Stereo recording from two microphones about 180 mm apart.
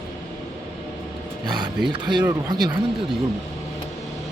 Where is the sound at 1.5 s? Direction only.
25° right (ahead or behind).